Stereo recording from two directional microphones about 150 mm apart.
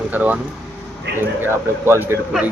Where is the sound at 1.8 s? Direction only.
15° right (ahead or behind).